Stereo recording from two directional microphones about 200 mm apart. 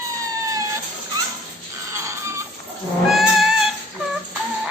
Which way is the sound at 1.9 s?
15° right (ahead or behind).